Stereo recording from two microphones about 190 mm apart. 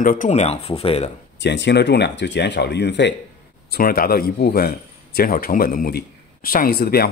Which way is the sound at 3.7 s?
50° left (ahead or behind).